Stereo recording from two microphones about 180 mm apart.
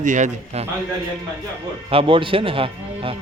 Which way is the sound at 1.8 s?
30° right (ahead or behind).